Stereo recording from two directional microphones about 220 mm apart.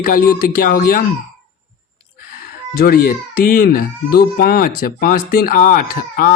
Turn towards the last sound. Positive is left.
turn(degrees=40)  # may be behind; listen again after turning